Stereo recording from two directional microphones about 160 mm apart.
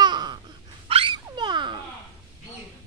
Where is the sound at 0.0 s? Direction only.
25° right (ahead or behind).